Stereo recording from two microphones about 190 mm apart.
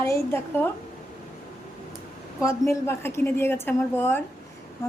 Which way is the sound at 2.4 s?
15° left (ahead or behind).